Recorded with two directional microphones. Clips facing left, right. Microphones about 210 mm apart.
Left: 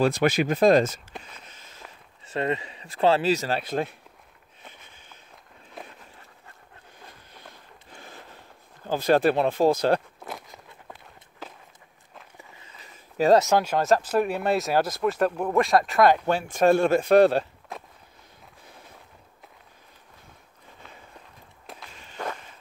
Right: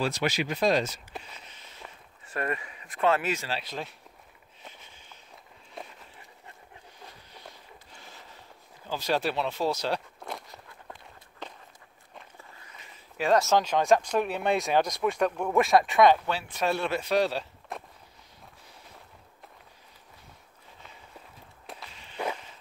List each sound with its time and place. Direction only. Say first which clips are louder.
0.0 s speech: left 7 dB; 55° left (ahead or behind)
2.2 s speech: left 5 dB; 25° left (ahead or behind)
3.4 s speech: left 8 dB; 50° left (ahead or behind)
5.8 s run: left 1 dB; centre (ahead or behind)
7.9 s a sound: left 8 dB; 55° left (ahead or behind)
8.8 s speech: left 8 dB; 55° left (ahead or behind)
10.9 s walk: even; 5° left (ahead or behind)
12.4 s walk: left 2 dB; 20° left (ahead or behind)
13.4 s speech: left 2 dB; 10° left (ahead or behind)
16.3 s speech: left 9 dB; 50° left (ahead or behind)
21.6 s walk: even; centre (ahead or behind)
21.9 s walk: even; 45° left (ahead or behind)